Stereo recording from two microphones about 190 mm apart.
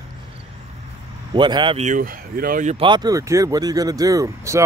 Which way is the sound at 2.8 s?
25° right (ahead or behind).